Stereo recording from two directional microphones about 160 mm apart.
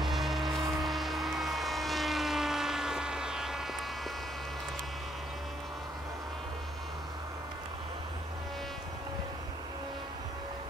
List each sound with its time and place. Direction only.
0.0 s vehicle: centre (ahead or behind)